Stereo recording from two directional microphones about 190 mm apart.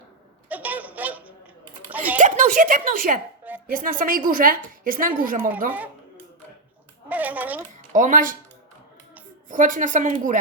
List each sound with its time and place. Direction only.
0.4 s a sound: 10° right (ahead or behind)
1.9 s typing: 10° right (ahead or behind)
2.1 s a woman's voice: 45° right (ahead or behind)
7.1 s speech: 10° right (ahead or behind)
7.9 s a woman's voice: 45° right (ahead or behind)
9.5 s a woman's voice: 45° right (ahead or behind)